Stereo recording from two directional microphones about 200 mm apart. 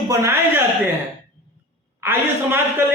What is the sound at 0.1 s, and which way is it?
Speech, 15° right (ahead or behind).